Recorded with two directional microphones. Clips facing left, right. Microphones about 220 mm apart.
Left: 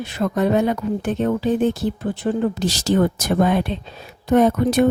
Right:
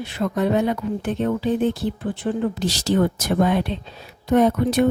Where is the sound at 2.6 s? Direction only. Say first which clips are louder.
Even; 45° left (ahead or behind).